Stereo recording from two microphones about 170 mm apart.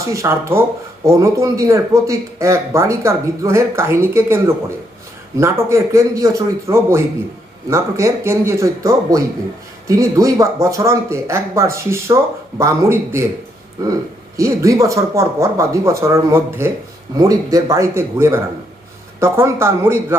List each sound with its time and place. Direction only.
0.0 s speech: 20° right (ahead or behind)
14.3 s a man's voice: 20° right (ahead or behind)